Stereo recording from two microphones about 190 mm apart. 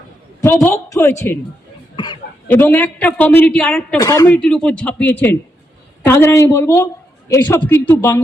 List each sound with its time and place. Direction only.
0.4 s a man's voice: 10° left (ahead or behind)
2.5 s a man's voice: 10° left (ahead or behind)
4.0 s a man's voice: 20° left (ahead or behind)
4.4 s a man's voice: 5° left (ahead or behind)